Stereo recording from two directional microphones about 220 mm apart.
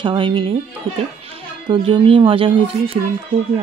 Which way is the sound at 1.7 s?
25° right (ahead or behind).